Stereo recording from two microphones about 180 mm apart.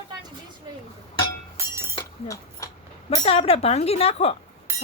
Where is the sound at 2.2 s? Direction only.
15° left (ahead or behind).